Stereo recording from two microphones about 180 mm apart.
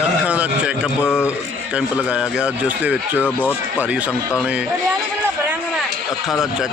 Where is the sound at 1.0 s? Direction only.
15° left (ahead or behind).